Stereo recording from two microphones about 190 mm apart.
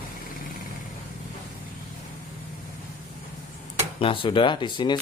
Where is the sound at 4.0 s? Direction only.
25° left (ahead or behind).